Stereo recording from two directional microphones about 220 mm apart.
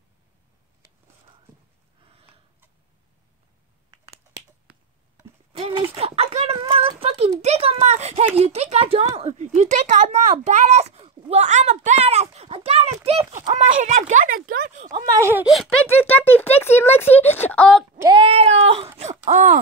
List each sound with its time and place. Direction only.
2.0 s a sound: 25° right (ahead or behind)
5.6 s a sound: 25° right (ahead or behind)
8.4 s speech: 30° right (ahead or behind)
13.0 s a sound: 25° right (ahead or behind)
13.4 s speech: 30° right (ahead or behind)
14.9 s speech: 15° right (ahead or behind); by 17.8 s 5° left (ahead or behind)
17.9 s female singing: 15° right (ahead or behind)
18.2 s speech: 25° right (ahead or behind)
18.9 s wail: 30° right (ahead or behind)